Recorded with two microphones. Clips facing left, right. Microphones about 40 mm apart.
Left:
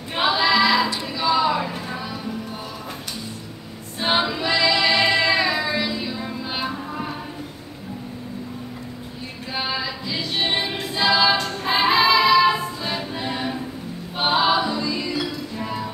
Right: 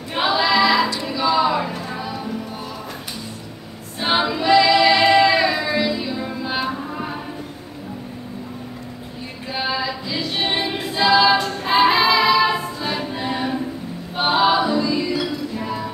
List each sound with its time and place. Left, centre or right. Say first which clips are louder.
0.1 s female singing: right 1 dB; centre
1.0 s a sound: right 2 dB; centre
4.0 s female singing: right 2 dB; centre
9.6 s female singing: right 3 dB; centre
14.1 s music: right 2 dB; centre